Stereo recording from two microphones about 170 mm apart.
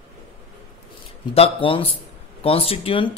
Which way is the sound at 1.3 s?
35° left (ahead or behind).